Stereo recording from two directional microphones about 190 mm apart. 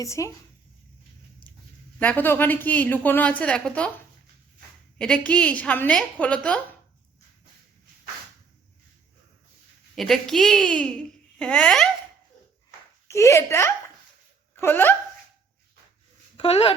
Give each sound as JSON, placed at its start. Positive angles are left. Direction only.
{"t": 0.0, "sound": "a woman's voice", "side_deg": 15}
{"t": 2.0, "sound": "a woman's voice", "side_deg": 10}
{"t": 4.9, "sound": "a woman's voice", "side_deg": 5}
{"t": 9.9, "sound": "a woman's voice", "side_deg": 0}
{"t": 13.1, "sound": "a woman's voice", "side_deg": 15}
{"t": 16.4, "sound": "speech", "side_deg": 30}